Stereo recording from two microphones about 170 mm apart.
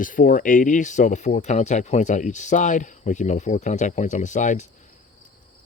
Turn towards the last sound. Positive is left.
turn(degrees=45)  # may be behind; listen again after turning